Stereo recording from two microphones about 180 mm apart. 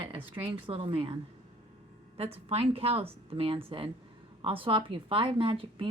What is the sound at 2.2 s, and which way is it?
A woman's voice, 35° right (ahead or behind).